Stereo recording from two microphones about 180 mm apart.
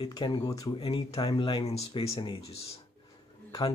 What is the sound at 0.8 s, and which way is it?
Speech, 30° left (ahead or behind).